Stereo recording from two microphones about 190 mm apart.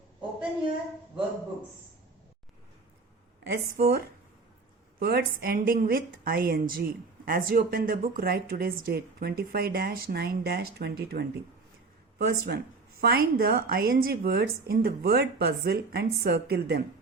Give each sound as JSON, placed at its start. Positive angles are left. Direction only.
{"t": 3.4, "sound": "a woman's voice", "side_deg": -55}